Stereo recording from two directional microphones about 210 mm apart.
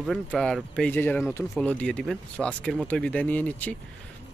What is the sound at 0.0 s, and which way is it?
Speech, centre (ahead or behind).